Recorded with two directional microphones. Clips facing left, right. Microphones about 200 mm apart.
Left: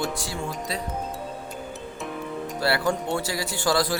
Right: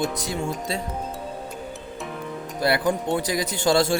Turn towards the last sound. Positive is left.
turn(degrees=-25)  # may be behind; listen again after turning